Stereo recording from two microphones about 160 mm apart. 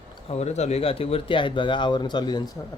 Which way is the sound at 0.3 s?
45° left (ahead or behind).